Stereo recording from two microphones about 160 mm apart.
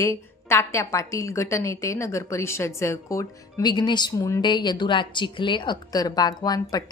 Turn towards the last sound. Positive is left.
turn(degrees=25)  # may be behind; listen again after turning